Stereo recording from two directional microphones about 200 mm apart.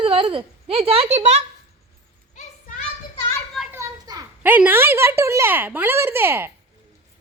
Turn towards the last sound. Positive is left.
turn(degrees=-10)  # may be behind; listen again after turning